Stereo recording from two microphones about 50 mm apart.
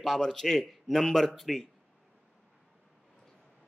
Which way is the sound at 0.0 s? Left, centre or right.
Centre.